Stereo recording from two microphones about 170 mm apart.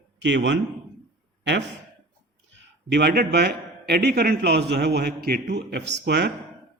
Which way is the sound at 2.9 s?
70° right (ahead or behind).